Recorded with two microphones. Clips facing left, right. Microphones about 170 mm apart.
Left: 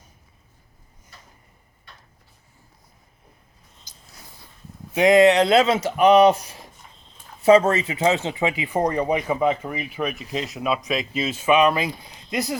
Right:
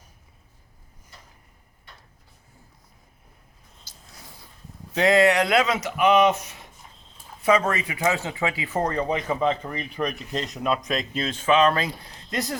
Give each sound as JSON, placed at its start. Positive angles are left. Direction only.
{"t": 4.9, "sound": "speech", "side_deg": 20}